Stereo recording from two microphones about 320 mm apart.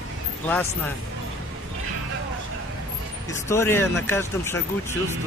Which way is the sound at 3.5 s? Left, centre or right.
Centre.